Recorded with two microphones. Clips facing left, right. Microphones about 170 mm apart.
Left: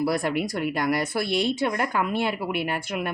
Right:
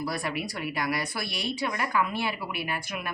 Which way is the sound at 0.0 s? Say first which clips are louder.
Left 7 dB; 55° left (ahead or behind).